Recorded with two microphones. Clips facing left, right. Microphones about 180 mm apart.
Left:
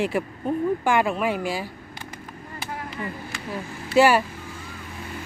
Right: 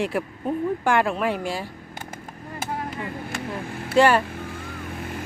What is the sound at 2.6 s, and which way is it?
Chop, 50° right (ahead or behind).